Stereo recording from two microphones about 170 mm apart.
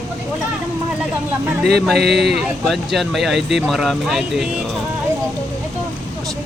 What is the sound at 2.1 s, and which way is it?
Speech, centre (ahead or behind).